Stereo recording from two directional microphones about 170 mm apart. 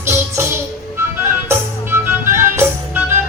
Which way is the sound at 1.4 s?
15° right (ahead or behind).